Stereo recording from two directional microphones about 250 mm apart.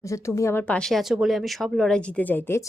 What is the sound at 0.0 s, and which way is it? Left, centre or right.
A woman's voice, centre.